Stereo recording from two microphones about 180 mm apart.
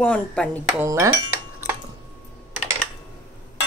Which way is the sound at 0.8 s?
15° right (ahead or behind).